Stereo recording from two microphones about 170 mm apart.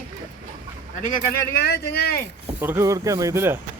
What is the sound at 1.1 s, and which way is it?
Speech, 65° left (ahead or behind).